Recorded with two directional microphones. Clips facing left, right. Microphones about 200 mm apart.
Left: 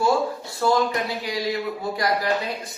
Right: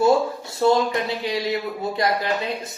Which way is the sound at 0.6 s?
25° right (ahead or behind).